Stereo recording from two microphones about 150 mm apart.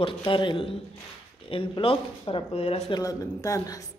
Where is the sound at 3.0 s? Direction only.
20° left (ahead or behind).